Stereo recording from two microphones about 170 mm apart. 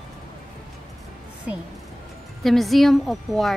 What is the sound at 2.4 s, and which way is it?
A woman's voice, centre (ahead or behind).